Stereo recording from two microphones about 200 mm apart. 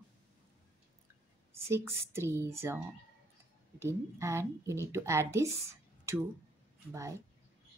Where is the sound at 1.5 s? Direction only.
10° right (ahead or behind).